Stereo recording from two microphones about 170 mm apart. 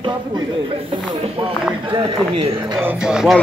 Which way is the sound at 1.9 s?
30° right (ahead or behind).